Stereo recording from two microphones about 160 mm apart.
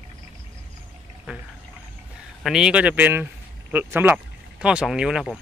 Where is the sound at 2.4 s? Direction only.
5° right (ahead or behind).